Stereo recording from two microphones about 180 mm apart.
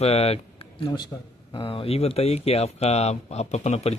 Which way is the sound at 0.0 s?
35° left (ahead or behind).